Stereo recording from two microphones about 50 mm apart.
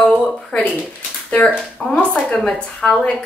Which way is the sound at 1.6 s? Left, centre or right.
Centre.